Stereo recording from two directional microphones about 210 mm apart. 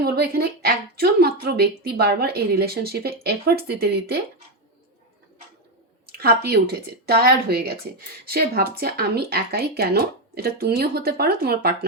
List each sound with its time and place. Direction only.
0.0 s a woman's voice: 50° right (ahead or behind)
6.1 s a woman's voice: 50° right (ahead or behind)